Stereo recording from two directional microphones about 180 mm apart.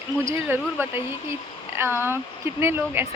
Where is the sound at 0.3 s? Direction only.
10° right (ahead or behind).